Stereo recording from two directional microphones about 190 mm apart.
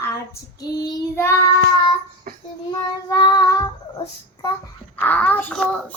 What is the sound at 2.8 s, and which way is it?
Child singing, 20° left (ahead or behind).